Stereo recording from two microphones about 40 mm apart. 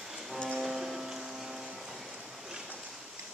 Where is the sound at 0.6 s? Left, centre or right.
Centre.